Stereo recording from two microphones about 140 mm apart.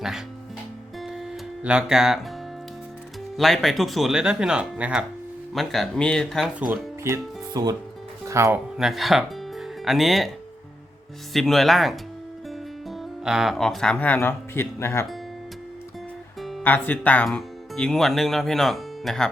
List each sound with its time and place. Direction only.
1.6 s speech: 5° right (ahead or behind)
3.3 s speech: centre (ahead or behind)
7.0 s speech: 25° right (ahead or behind)
8.8 s speech: centre (ahead or behind)
11.3 s speech: centre (ahead or behind); by 15.0 s 20° left (ahead or behind)
16.4 s music: centre (ahead or behind)
16.6 s speech: 15° left (ahead or behind)